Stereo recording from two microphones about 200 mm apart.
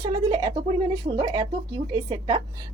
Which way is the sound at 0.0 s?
20° right (ahead or behind).